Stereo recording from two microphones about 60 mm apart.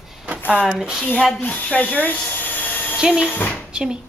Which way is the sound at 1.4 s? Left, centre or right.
Left.